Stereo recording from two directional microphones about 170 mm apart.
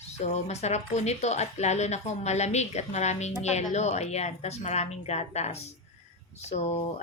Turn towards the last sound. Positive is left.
turn(degrees=40)  # may be behind; listen again after turning